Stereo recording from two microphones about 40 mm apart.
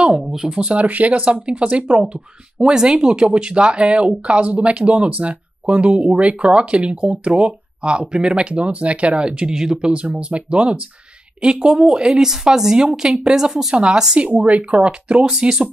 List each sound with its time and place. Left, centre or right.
0.2 s a woman's voice: centre
0.7 s speech: right
9.5 s a woman's voice: centre
9.8 s speech: right
11.4 s a woman's voice: centre
14.2 s speech: right
15.4 s a woman's voice: centre